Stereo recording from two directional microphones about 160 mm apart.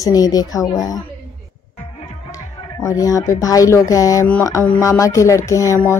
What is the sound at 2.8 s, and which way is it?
A woman's voice, 20° left (ahead or behind).